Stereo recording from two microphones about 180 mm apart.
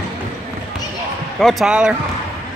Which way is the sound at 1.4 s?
Centre (ahead or behind).